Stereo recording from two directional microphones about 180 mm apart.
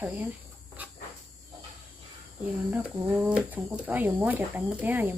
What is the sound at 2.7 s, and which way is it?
Speech, 5° right (ahead or behind).